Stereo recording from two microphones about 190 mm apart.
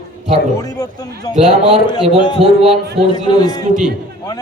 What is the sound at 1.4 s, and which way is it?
Speech, 35° right (ahead or behind).